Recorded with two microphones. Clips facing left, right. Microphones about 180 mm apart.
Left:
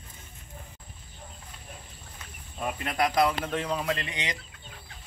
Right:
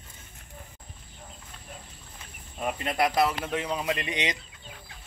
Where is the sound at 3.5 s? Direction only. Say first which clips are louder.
Even; 10° right (ahead or behind).